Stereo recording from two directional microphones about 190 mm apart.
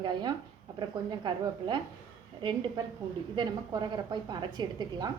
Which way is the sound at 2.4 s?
25° right (ahead or behind).